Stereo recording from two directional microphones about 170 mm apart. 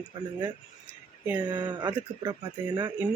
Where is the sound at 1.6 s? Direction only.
25° right (ahead or behind).